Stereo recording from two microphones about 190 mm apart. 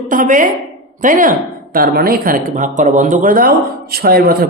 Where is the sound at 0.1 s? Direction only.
45° right (ahead or behind).